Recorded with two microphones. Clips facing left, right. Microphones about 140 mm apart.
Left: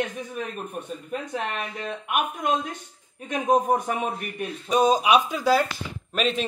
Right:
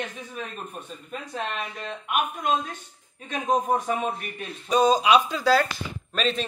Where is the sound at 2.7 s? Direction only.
15° left (ahead or behind).